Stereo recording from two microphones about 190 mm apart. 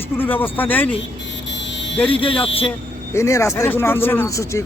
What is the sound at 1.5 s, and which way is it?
Buzzer, 70° left (ahead or behind).